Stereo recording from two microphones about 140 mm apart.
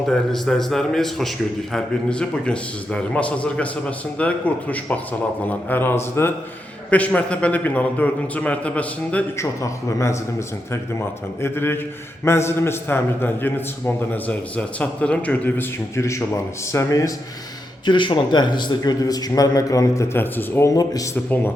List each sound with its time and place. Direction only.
0.0 s a man's voice: centre (ahead or behind)
9.4 s a man's voice: 20° left (ahead or behind)
11.3 s a man's voice: 15° left (ahead or behind)
17.8 s a man's voice: 35° left (ahead or behind)